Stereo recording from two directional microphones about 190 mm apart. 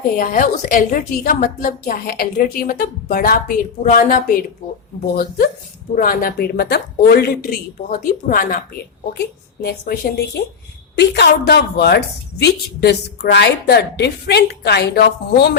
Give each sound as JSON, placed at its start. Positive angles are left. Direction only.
{"t": 0.2, "sound": "a woman's voice", "side_deg": 45}
{"t": 6.0, "sound": "a woman's voice", "side_deg": 50}